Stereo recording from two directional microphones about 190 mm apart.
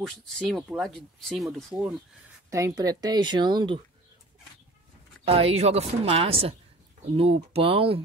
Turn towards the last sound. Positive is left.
turn(degrees=-30)  # may be behind; listen again after turning